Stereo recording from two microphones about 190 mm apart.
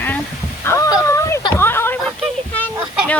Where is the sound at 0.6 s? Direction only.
15° left (ahead or behind).